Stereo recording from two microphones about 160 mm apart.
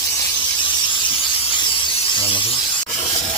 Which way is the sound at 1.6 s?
30° left (ahead or behind).